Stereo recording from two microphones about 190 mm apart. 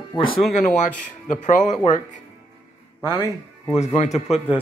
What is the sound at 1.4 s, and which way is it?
Speech, 40° left (ahead or behind).